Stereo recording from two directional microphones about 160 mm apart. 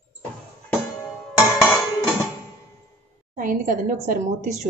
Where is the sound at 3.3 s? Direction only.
55° right (ahead or behind).